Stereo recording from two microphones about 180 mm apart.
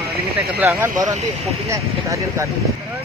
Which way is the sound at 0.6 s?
15° right (ahead or behind).